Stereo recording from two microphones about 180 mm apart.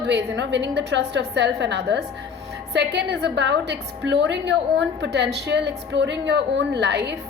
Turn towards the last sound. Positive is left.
turn(degrees=-70)  # may be behind; listen again after turning